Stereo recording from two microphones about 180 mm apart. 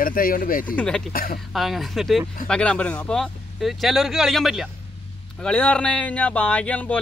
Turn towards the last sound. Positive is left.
turn(degrees=5)  # may be behind; listen again after turning